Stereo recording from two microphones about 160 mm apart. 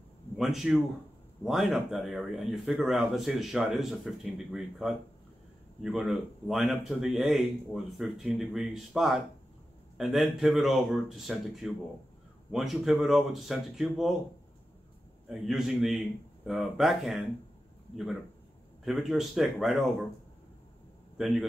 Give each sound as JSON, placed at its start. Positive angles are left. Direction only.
{"t": 0.4, "sound": "speech", "side_deg": 0}
{"t": 15.2, "sound": "speech", "side_deg": 0}
{"t": 18.9, "sound": "speech", "side_deg": 0}
{"t": 21.2, "sound": "speech", "side_deg": 0}